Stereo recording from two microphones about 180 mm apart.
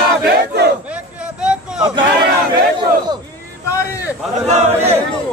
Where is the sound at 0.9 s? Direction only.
5° right (ahead or behind).